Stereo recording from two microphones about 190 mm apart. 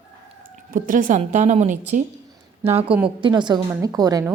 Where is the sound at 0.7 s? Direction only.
45° right (ahead or behind).